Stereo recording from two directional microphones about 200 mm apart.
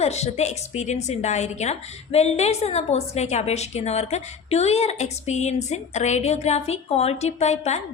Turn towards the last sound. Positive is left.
turn(degrees=35)  # may be behind; listen again after turning